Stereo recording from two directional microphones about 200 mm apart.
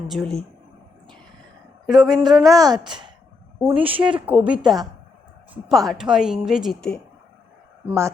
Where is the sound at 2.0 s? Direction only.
20° right (ahead or behind).